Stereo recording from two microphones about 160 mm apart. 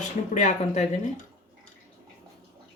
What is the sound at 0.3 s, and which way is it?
Speech, 50° left (ahead or behind).